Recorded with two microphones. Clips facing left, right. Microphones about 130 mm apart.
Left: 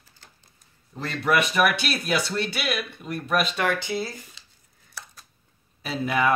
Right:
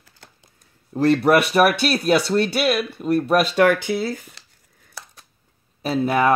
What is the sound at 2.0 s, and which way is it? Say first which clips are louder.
Speech: right 8 dB; 50° right (ahead or behind).